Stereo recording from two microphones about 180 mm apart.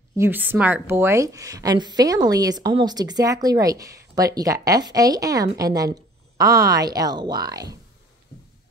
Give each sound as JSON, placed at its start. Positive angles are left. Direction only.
{"t": 0.2, "sound": "a woman's voice", "side_deg": -10}